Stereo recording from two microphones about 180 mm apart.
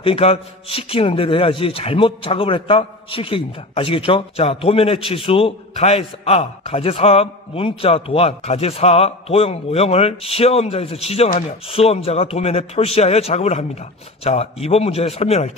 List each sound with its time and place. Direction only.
0.0 s a man's voice: 35° left (ahead or behind)